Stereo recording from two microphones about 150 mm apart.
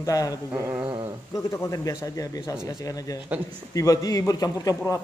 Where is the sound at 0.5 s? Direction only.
15° right (ahead or behind).